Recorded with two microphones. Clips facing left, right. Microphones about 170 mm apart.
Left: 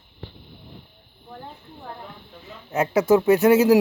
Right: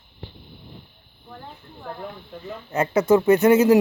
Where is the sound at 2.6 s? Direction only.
Centre (ahead or behind).